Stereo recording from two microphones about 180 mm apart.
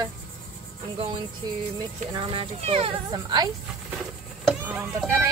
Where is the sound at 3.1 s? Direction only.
20° right (ahead or behind).